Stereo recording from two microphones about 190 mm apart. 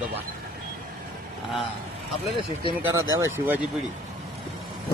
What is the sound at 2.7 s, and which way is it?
Speech, 20° right (ahead or behind).